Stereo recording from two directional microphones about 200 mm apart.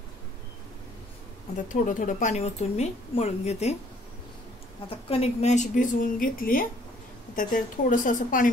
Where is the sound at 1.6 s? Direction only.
40° left (ahead or behind).